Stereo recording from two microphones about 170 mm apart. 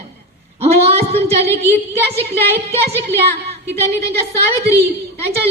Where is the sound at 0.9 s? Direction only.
35° right (ahead or behind).